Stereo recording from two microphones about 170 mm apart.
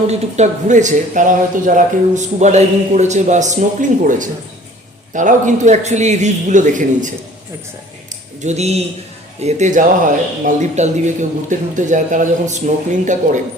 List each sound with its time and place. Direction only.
0.1 s speech: 45° right (ahead or behind)
8.4 s speech: 40° right (ahead or behind)